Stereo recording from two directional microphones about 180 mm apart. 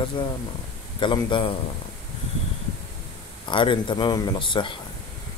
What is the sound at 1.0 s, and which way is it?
Speech, 25° left (ahead or behind).